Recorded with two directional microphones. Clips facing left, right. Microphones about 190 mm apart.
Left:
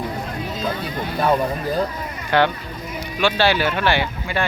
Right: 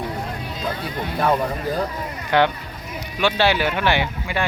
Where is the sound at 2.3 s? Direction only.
15° right (ahead or behind).